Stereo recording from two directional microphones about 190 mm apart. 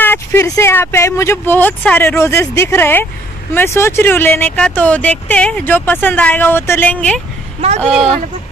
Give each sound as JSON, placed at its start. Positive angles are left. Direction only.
{"t": 0.0, "sound": "speech", "side_deg": 10}
{"t": 7.6, "sound": "speech", "side_deg": -35}